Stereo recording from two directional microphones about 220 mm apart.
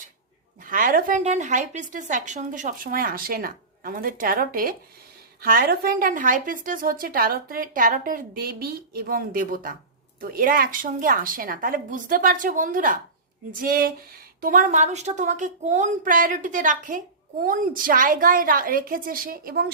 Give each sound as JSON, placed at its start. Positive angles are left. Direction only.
{"t": 0.6, "sound": "a woman's voice", "side_deg": -40}